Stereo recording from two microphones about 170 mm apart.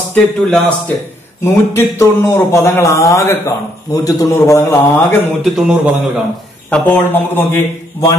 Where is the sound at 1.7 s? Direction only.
15° left (ahead or behind).